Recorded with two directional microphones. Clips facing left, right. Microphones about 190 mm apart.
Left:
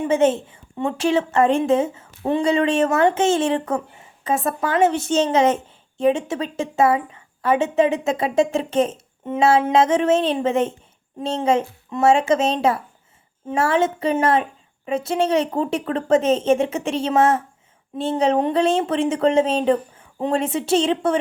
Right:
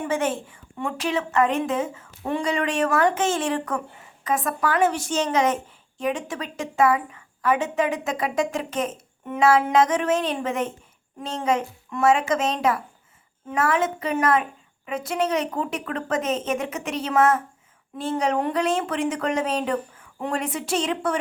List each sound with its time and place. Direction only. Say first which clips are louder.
0.0 s a woman's voice: left 7 dB; 25° left (ahead or behind)